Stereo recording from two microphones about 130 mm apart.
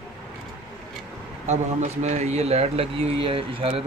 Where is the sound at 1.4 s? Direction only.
60° right (ahead or behind).